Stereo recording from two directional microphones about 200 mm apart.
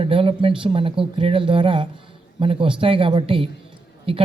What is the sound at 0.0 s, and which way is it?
Speech, 25° right (ahead or behind).